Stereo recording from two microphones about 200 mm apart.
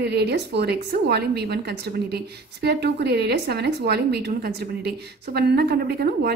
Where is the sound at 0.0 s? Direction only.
55° right (ahead or behind).